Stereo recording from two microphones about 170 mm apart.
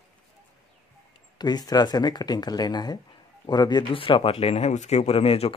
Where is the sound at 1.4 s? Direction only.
25° left (ahead or behind).